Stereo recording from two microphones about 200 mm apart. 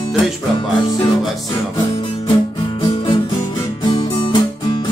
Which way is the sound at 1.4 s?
25° left (ahead or behind).